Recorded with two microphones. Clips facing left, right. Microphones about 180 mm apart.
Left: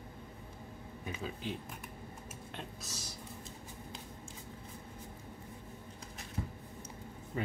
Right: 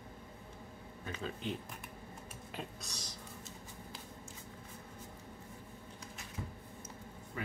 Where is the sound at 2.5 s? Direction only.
5° left (ahead or behind).